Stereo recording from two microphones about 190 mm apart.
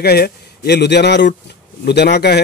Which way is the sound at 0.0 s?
55° left (ahead or behind).